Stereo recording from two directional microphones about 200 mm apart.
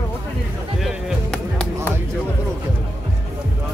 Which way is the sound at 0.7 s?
Centre (ahead or behind).